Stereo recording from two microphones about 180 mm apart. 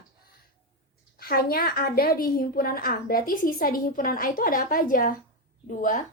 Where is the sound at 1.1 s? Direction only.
60° left (ahead or behind).